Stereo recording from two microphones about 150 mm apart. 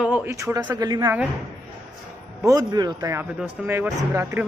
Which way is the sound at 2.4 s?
25° right (ahead or behind).